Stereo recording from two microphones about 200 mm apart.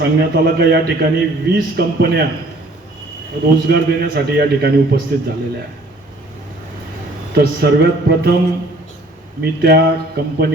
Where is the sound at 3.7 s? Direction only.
55° right (ahead or behind).